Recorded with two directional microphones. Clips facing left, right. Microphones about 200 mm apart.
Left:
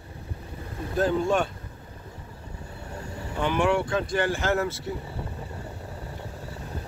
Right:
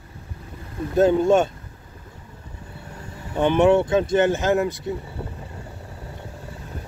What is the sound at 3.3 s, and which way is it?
Speech, 25° right (ahead or behind).